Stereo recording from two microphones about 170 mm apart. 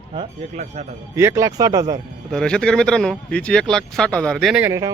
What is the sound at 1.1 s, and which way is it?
Speech, 15° right (ahead or behind).